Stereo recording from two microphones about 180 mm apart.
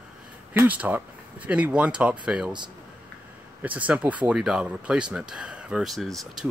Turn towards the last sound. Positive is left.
turn(degrees=0)  # may be behind; listen again after turning